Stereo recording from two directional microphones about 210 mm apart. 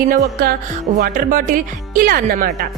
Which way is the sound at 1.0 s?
40° right (ahead or behind).